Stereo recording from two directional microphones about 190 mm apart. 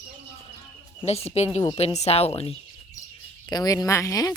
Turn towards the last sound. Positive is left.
turn(degrees=15)  # may be behind; listen again after turning